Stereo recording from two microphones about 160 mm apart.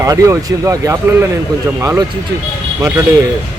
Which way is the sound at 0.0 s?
20° right (ahead or behind).